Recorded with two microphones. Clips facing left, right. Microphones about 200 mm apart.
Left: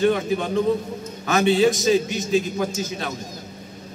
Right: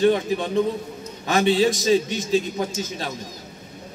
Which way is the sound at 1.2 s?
30° right (ahead or behind).